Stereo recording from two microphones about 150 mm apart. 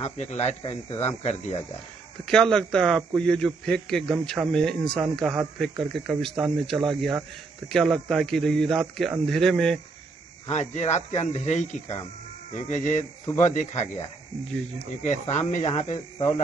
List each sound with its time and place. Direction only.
0.0 s speech: 50° left (ahead or behind)
2.2 s speech: 5° left (ahead or behind)
10.5 s speech: 50° left (ahead or behind)
15.0 s speech: 50° left (ahead or behind)